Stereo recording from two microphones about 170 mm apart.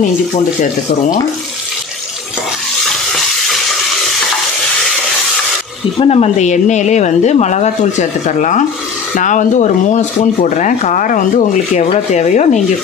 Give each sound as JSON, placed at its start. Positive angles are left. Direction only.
{"t": 5.9, "sound": "speech", "side_deg": 35}